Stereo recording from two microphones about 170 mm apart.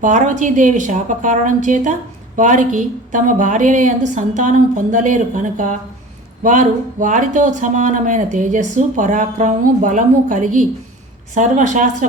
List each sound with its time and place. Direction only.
0.0 s a woman's voice: 45° right (ahead or behind)